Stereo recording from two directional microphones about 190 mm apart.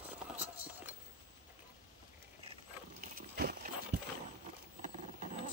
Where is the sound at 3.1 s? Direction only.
50° right (ahead or behind).